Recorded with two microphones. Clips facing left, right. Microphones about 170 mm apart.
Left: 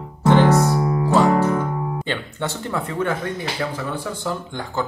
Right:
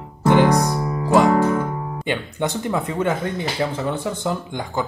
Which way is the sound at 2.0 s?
15° right (ahead or behind).